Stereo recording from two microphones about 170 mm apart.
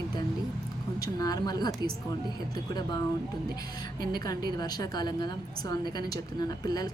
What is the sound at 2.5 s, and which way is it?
A woman's voice, 25° left (ahead or behind).